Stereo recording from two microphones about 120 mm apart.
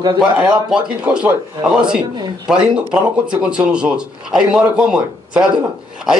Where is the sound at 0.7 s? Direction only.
5° right (ahead or behind).